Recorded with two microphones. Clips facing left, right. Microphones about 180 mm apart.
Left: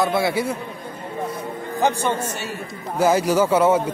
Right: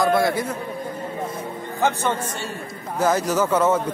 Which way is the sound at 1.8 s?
15° left (ahead or behind).